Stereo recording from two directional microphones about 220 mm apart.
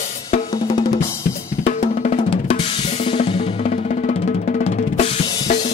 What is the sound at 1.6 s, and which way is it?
Drum, 30° left (ahead or behind).